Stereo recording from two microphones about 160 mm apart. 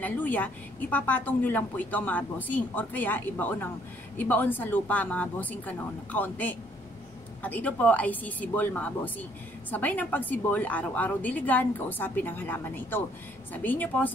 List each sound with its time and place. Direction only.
0.0 s a woman's voice: 10° left (ahead or behind)